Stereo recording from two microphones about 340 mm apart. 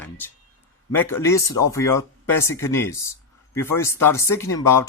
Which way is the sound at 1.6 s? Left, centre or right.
Left.